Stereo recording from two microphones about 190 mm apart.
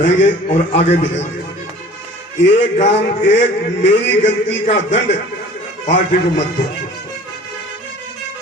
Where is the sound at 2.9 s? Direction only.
70° left (ahead or behind).